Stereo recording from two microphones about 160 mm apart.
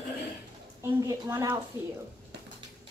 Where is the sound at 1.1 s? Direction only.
20° right (ahead or behind).